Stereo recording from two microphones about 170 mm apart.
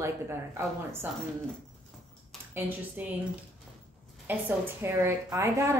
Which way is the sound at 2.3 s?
Centre (ahead or behind).